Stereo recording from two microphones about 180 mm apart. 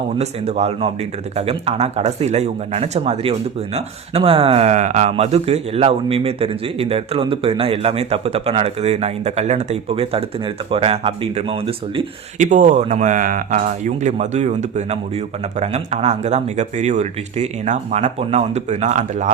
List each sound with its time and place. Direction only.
0.2 s speech: 35° right (ahead or behind)
12.5 s speech: 45° right (ahead or behind)